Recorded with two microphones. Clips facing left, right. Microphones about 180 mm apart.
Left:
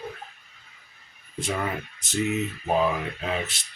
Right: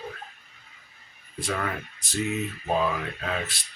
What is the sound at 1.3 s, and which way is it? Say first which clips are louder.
Speech: left 1 dB; 20° left (ahead or behind).